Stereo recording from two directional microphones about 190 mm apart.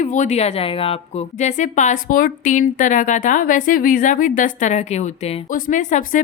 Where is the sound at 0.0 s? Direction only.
40° left (ahead or behind).